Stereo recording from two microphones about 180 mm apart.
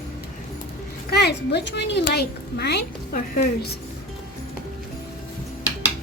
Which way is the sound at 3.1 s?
50° left (ahead or behind).